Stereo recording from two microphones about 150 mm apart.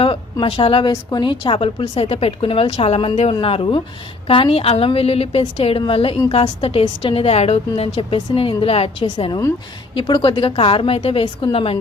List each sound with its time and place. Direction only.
0.0 s a woman's voice: 35° left (ahead or behind)
9.0 s a woman's voice: 30° left (ahead or behind)